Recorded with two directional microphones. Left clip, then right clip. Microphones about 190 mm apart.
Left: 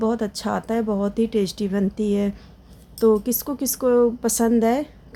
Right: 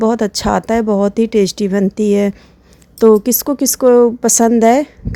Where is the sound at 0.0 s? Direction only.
45° right (ahead or behind).